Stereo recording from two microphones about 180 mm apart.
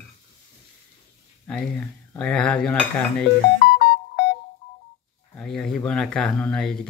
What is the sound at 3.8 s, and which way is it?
Music, 75° left (ahead or behind).